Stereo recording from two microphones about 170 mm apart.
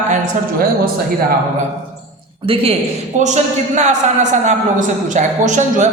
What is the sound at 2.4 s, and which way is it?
A man's voice, 35° right (ahead or behind).